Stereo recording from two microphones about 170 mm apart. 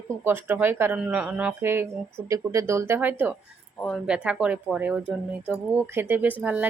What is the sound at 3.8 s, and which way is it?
Speech, 5° left (ahead or behind).